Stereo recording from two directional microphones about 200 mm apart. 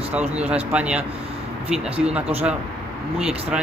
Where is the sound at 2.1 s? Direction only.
5° right (ahead or behind).